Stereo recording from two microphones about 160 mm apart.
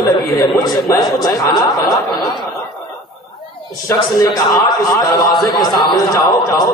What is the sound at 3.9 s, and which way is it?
A man's voice, 20° left (ahead or behind).